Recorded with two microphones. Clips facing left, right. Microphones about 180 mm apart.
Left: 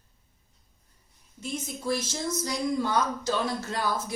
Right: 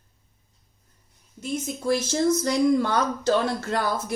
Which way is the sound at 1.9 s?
65° right (ahead or behind).